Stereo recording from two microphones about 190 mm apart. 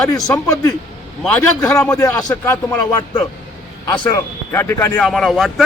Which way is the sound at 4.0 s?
15° left (ahead or behind).